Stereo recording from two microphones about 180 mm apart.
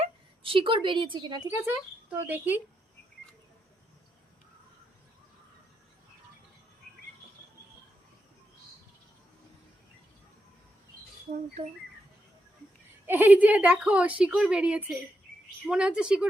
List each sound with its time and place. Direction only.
0.0 s a woman's voice: 30° right (ahead or behind)
1.6 s a woman's voice: 10° right (ahead or behind)
13.1 s a woman's voice: 10° right (ahead or behind)